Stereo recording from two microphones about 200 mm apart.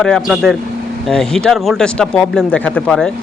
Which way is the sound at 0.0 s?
Centre (ahead or behind).